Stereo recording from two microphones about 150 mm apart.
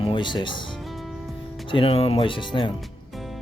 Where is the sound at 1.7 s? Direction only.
40° left (ahead or behind).